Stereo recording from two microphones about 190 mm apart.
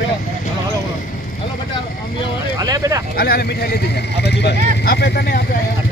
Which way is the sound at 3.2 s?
55° left (ahead or behind).